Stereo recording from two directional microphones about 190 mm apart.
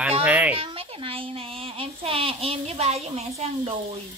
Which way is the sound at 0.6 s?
30° right (ahead or behind).